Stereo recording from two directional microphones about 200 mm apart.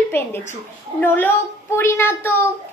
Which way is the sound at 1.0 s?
10° left (ahead or behind).